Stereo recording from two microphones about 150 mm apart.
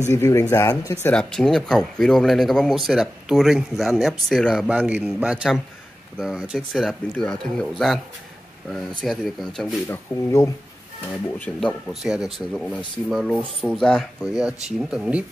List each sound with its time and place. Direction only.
0.1 s speech: 20° left (ahead or behind)
1.0 s speech: 5° left (ahead or behind)
4.6 s a man's voice: 10° right (ahead or behind)
9.8 s speech: 20° left (ahead or behind)
11.9 s speech: 5° right (ahead or behind)
14.2 s speech: 25° left (ahead or behind)
14.7 s speech: 5° right (ahead or behind)